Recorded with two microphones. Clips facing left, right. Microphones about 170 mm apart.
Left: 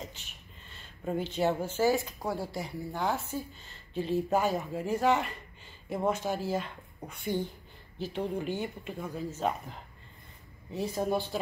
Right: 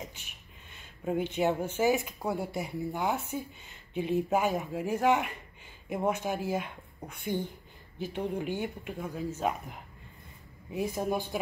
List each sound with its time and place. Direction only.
1.0 s a woman's voice: 15° right (ahead or behind)